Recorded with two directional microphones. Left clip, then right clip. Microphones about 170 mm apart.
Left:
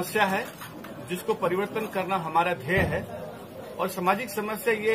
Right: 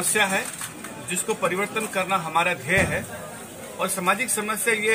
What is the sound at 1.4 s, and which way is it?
A man's voice, 25° left (ahead or behind).